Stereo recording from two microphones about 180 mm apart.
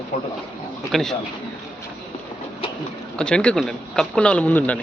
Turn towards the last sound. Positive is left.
turn(degrees=10)  # may be behind; listen again after turning